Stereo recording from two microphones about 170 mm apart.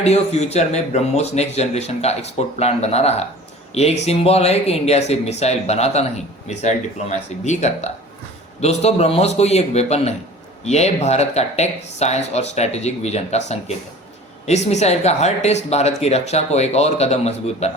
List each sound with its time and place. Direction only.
0.0 s speech: 40° left (ahead or behind)
14.4 s speech: 40° left (ahead or behind)